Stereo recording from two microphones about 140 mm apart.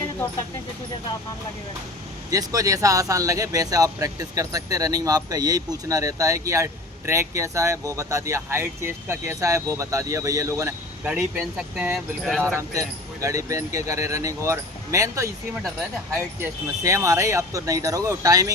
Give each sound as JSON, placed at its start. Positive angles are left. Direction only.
{"t": 2.3, "sound": "speech", "side_deg": -25}
{"t": 11.1, "sound": "speech", "side_deg": -5}
{"t": 13.2, "sound": "speech", "side_deg": -20}